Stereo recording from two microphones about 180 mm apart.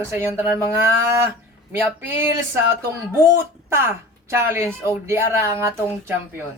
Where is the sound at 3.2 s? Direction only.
15° right (ahead or behind).